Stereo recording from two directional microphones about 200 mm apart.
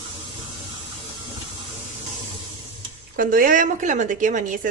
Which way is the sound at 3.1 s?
45° right (ahead or behind).